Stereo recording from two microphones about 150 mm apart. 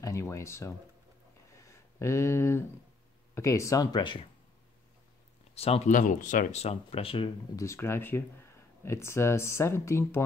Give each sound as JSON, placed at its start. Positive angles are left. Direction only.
{"t": 0.0, "sound": "speech", "side_deg": 20}
{"t": 1.5, "sound": "a sound", "side_deg": 20}
{"t": 3.3, "sound": "speech", "side_deg": 20}
{"t": 5.5, "sound": "speech", "side_deg": 40}
{"t": 5.9, "sound": "speech", "side_deg": 60}
{"t": 6.6, "sound": "speech", "side_deg": 40}
{"t": 7.5, "sound": "speech", "side_deg": 20}